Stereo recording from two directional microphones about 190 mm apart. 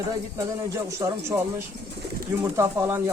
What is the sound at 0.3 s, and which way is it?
A man's voice, 15° right (ahead or behind).